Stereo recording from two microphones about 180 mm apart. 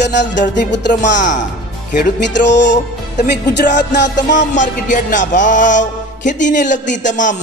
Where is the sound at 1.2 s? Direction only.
45° left (ahead or behind).